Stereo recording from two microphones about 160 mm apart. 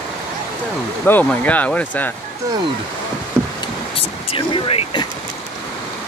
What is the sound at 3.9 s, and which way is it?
Speech, 35° left (ahead or behind).